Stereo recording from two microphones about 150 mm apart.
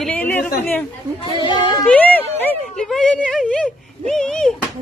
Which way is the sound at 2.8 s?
5° left (ahead or behind).